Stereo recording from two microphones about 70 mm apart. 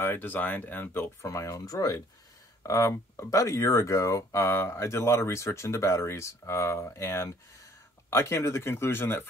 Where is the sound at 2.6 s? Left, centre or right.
Left.